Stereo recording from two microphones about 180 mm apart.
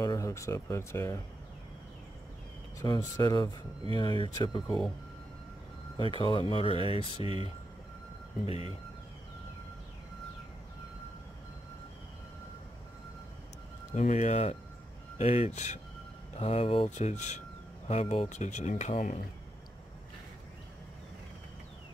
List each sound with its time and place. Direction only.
0.0 s speech: 20° left (ahead or behind)
2.8 s speech: 20° left (ahead or behind)
5.9 s speech: 30° left (ahead or behind)
8.5 s speech: 35° left (ahead or behind)
13.9 s speech: 40° left (ahead or behind)